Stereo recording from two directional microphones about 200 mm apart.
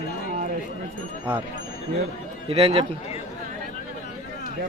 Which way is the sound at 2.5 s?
30° right (ahead or behind).